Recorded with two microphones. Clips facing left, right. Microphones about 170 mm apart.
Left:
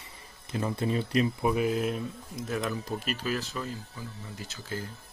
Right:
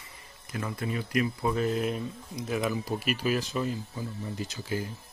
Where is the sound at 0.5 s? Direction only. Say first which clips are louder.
Left 4 dB; 25° left (ahead or behind).